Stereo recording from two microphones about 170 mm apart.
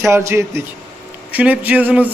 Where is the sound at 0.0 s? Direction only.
15° right (ahead or behind).